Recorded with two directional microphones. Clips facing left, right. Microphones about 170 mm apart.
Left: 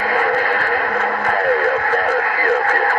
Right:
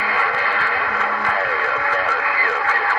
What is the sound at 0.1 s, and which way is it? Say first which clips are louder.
Radio: left 6 dB; 50° left (ahead or behind).